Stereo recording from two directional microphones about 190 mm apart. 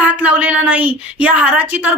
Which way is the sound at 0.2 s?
5° right (ahead or behind).